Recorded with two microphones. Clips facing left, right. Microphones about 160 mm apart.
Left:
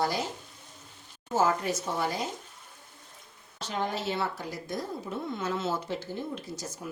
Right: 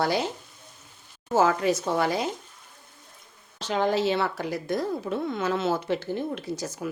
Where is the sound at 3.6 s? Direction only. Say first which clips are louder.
Right 8 dB; 90° right; by 6.4 s 70° right (ahead or behind).